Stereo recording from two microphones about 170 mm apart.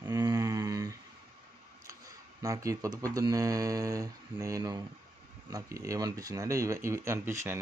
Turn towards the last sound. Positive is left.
turn(degrees=-15)  # may be behind; listen again after turning